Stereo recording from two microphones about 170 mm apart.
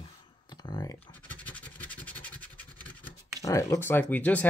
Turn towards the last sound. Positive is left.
turn(degrees=10)  # may be behind; listen again after turning